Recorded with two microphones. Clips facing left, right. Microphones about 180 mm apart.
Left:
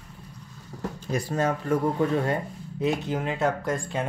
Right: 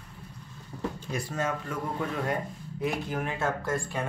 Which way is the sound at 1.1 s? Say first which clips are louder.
Left 7 dB; 35° left (ahead or behind).